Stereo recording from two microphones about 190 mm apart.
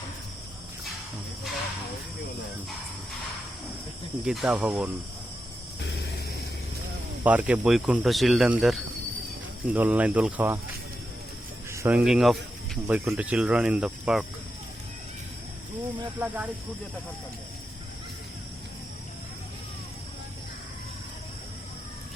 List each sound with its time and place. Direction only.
4.3 s speech: 5° right (ahead or behind)
5.8 s vehicle: 70° left (ahead or behind)
7.3 s speech: 5° right (ahead or behind)
9.6 s cricket: 10° right (ahead or behind)
11.7 s cricket: 15° right (ahead or behind)
11.9 s speech: 5° right (ahead or behind)
13.1 s cricket: 5° right (ahead or behind)
16.2 s cricket: 10° right (ahead or behind)